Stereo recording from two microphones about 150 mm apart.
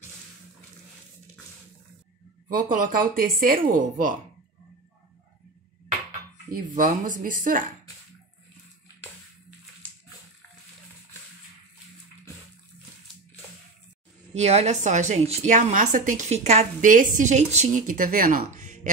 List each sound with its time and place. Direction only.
2.4 s speech: 65° right (ahead or behind)
3.7 s speech: 60° right (ahead or behind)
6.5 s speech: 65° right (ahead or behind)
14.3 s a woman's voice: 45° right (ahead or behind)
16.8 s speech: 60° right (ahead or behind)